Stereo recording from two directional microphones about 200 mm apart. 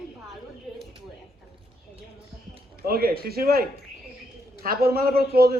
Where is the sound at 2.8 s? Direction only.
50° right (ahead or behind).